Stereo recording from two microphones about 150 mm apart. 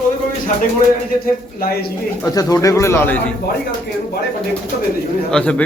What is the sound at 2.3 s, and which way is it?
Speech, 25° left (ahead or behind).